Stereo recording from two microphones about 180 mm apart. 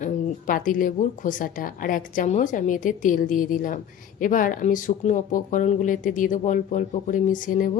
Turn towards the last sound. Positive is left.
turn(degrees=50)  # may be behind; listen again after turning